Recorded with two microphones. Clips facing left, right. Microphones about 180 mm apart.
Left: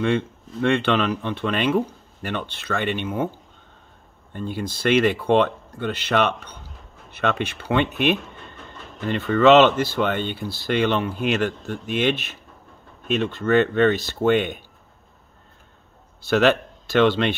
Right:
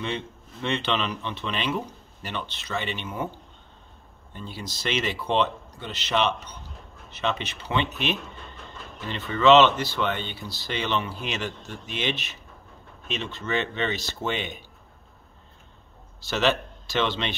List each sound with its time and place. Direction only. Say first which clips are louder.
0.0 s speech: left 9 dB; 50° left (ahead or behind)
4.3 s speech: left 9 dB; 50° left (ahead or behind)
16.3 s speech: left 6 dB; 55° left (ahead or behind)